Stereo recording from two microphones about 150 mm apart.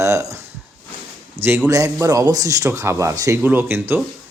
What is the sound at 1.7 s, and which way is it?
Speech, 20° right (ahead or behind).